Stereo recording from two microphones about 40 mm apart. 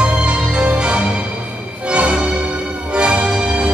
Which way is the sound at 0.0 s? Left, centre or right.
Right.